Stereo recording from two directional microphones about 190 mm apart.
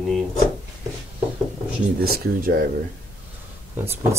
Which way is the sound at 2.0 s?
55° right (ahead or behind).